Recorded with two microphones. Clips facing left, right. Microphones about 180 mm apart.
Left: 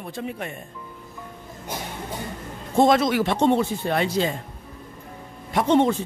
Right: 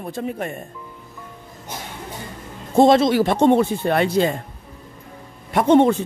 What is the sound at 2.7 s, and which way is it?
Speech, 30° right (ahead or behind).